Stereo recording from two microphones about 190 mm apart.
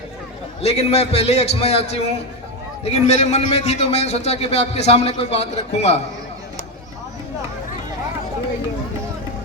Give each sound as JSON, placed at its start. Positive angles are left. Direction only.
{"t": 0.6, "sound": "a man's voice", "side_deg": 35}